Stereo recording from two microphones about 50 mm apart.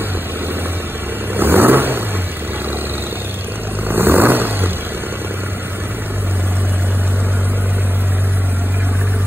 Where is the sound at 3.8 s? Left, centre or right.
Right.